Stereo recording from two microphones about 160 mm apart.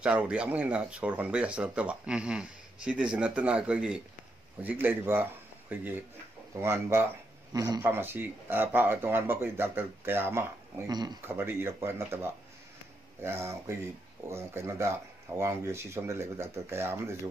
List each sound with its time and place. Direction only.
0.0 s speech: 5° right (ahead or behind)
10.9 s speech: 25° right (ahead or behind)
11.2 s speech: 15° right (ahead or behind)